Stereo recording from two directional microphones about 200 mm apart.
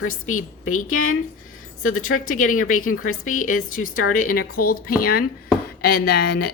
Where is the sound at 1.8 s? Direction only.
90° left.